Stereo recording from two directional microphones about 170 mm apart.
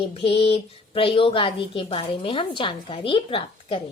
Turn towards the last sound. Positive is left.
turn(degrees=30)  # may be behind; listen again after turning